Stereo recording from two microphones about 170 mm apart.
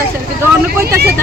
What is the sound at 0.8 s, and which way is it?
Speech, 65° right (ahead or behind).